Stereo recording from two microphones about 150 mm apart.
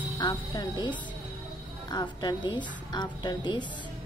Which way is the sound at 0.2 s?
30° left (ahead or behind).